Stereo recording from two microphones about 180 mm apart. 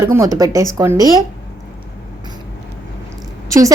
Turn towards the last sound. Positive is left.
turn(degrees=-20)  # may be behind; listen again after turning